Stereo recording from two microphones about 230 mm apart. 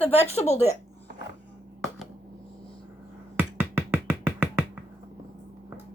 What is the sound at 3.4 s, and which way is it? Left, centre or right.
Music, centre.